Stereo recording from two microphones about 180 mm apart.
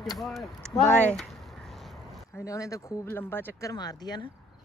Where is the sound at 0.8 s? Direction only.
10° left (ahead or behind).